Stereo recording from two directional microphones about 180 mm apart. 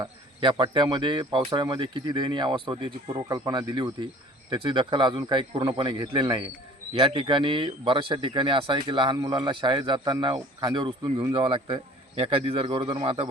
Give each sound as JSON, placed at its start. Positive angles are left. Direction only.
{"t": 0.0, "sound": "speech", "side_deg": -30}